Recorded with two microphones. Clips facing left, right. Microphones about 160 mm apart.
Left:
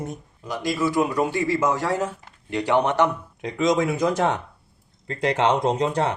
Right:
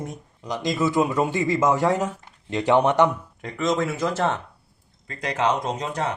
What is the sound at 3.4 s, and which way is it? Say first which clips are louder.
Speech: left 3 dB; 15° left (ahead or behind).